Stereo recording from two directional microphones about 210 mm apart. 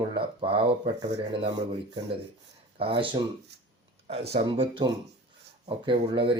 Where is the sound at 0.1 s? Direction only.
25° right (ahead or behind).